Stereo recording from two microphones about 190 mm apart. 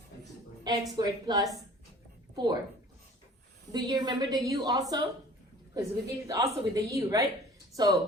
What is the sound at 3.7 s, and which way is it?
A woman's voice, 20° right (ahead or behind).